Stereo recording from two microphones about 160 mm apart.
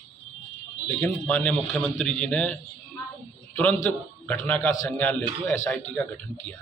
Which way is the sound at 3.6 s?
10° left (ahead or behind).